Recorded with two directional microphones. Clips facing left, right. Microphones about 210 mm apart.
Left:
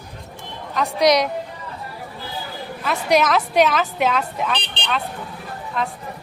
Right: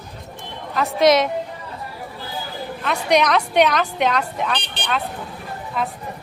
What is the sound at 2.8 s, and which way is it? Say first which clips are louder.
A woman's voice: even; 5° left (ahead or behind).